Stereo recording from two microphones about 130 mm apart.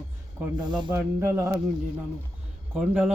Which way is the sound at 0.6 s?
35° right (ahead or behind).